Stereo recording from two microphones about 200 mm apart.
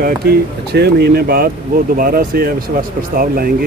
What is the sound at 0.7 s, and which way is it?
Speech, 55° right (ahead or behind).